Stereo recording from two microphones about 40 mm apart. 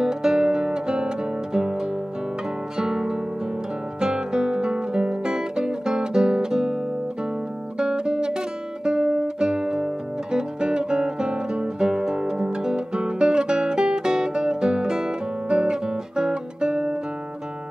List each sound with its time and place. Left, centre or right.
0.0 s music: centre
4.0 s guitar: centre
7.8 s guitar: right